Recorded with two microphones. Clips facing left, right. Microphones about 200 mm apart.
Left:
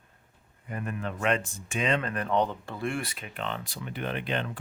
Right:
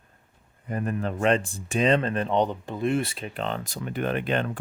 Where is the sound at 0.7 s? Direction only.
35° right (ahead or behind).